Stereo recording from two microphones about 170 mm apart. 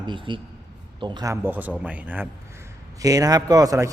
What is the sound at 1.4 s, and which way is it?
Speech, 10° right (ahead or behind).